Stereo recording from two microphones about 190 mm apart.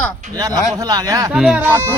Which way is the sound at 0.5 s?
20° right (ahead or behind).